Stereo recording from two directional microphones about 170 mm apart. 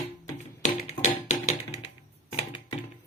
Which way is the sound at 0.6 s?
45° left (ahead or behind).